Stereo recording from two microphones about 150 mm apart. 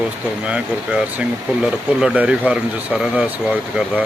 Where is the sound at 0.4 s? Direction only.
5° right (ahead or behind).